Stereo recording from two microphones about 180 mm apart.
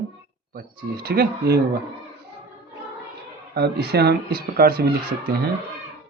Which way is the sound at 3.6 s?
65° right (ahead or behind).